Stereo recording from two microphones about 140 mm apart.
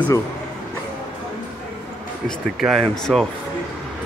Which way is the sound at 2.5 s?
Centre (ahead or behind).